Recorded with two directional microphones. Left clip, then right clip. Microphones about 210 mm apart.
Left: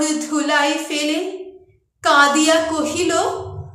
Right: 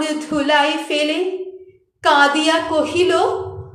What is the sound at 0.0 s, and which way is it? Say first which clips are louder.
A woman's voice: even; centre (ahead or behind).